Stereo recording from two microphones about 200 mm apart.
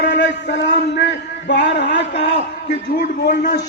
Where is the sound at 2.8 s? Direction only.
50° left (ahead or behind).